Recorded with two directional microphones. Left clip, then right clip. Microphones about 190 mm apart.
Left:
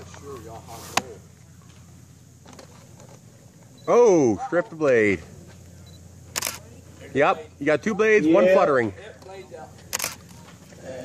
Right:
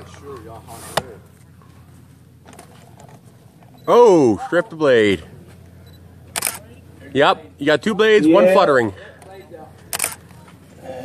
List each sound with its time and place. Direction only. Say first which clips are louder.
0.1 s speech: right 3 dB; 20° right (ahead or behind)
3.8 s speech: right 6 dB; 5° right (ahead or behind)
7.2 s speech: right 5 dB; 10° right (ahead or behind)